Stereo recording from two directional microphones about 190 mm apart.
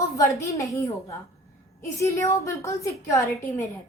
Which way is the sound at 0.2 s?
15° left (ahead or behind).